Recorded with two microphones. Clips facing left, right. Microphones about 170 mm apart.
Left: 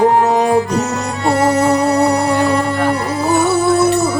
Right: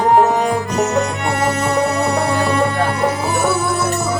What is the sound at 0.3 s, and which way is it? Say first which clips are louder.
Music: left 3 dB; 20° left (ahead or behind).